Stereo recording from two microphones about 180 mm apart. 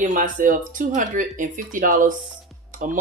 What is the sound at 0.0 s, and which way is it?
Speech, 45° right (ahead or behind).